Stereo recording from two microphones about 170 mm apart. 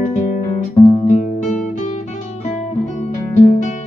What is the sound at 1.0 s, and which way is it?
Music, 45° left (ahead or behind).